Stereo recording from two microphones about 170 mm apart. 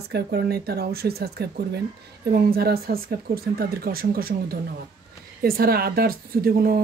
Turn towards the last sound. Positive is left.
turn(degrees=-60)  # may be behind; listen again after turning